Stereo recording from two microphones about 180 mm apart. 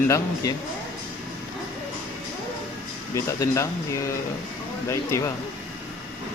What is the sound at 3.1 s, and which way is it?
Speech, 15° left (ahead or behind).